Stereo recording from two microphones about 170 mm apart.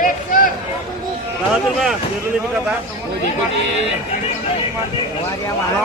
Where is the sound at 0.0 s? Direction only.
50° left (ahead or behind).